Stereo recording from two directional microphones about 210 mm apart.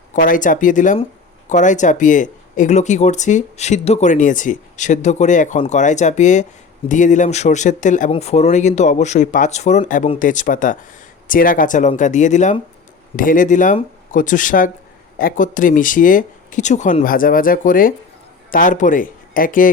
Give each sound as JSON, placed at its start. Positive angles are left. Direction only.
{"t": 0.1, "sound": "speech", "side_deg": 40}